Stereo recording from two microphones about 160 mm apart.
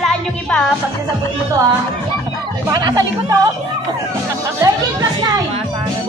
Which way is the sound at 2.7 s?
25° right (ahead or behind).